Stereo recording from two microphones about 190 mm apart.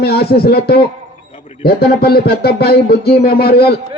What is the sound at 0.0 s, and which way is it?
A man's voice, 55° left (ahead or behind).